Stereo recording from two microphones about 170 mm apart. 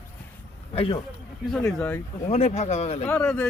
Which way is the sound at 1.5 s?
5° left (ahead or behind).